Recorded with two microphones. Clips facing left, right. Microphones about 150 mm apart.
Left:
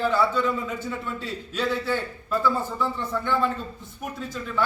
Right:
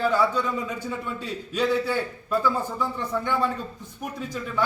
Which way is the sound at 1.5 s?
15° right (ahead or behind).